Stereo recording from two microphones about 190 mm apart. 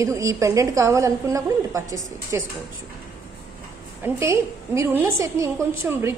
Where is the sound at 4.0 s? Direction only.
15° right (ahead or behind).